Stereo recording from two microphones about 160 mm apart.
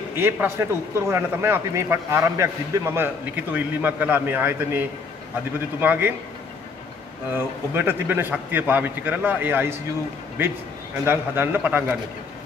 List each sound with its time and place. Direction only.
0.1 s a man's voice: 15° right (ahead or behind)
7.3 s a man's voice: 15° right (ahead or behind)
11.1 s a man's voice: 15° right (ahead or behind)